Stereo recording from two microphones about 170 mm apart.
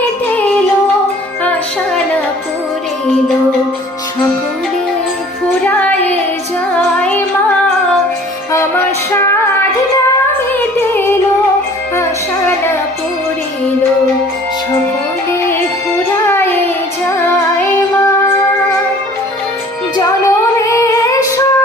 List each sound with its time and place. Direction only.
5.6 s child singing: 10° left (ahead or behind)
8.5 s a sound: 15° left (ahead or behind)
10.8 s music: 10° left (ahead or behind)
16.2 s child singing: 15° left (ahead or behind)
20.0 s music: 20° left (ahead or behind)